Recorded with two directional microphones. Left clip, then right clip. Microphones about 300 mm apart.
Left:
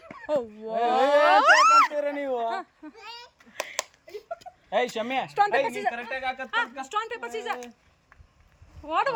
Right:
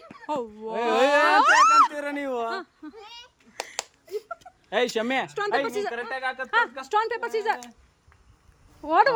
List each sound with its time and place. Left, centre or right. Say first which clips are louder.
0.3 s speech: left 2 dB; centre
0.7 s a woman's voice: even; centre
1.2 s a sound: left 1 dB; centre
4.7 s a woman's voice: right 2 dB; centre
8.9 s a woman's voice: right 6 dB; centre